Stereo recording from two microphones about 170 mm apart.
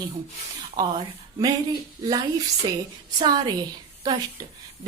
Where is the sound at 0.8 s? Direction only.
20° right (ahead or behind).